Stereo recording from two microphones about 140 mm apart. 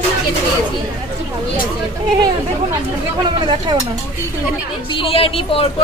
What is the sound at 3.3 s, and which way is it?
Speech, 35° right (ahead or behind).